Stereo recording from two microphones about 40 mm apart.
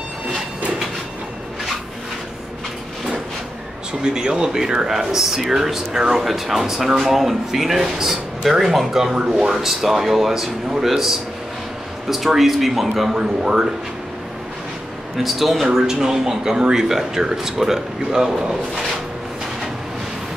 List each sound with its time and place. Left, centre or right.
4.0 s speech: right
12.4 s a man's voice: centre
13.2 s speech: centre
15.2 s speech: centre